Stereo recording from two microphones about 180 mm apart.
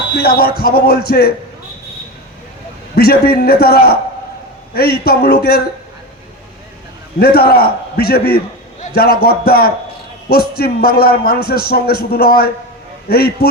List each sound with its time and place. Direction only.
0.1 s a man's voice: 60° left (ahead or behind)
2.9 s a man's voice: 60° left (ahead or behind)
7.2 s a man's voice: 60° left (ahead or behind)